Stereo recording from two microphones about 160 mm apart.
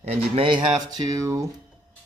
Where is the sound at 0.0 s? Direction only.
40° right (ahead or behind).